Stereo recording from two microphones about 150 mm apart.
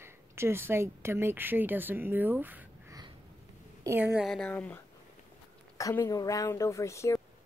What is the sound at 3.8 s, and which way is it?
Speech, 15° right (ahead or behind).